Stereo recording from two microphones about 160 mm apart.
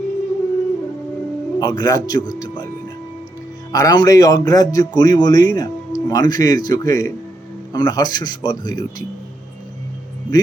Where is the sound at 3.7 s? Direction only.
25° left (ahead or behind).